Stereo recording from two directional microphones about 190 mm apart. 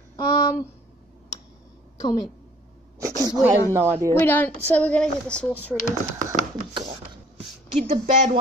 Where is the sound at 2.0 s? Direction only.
20° left (ahead or behind).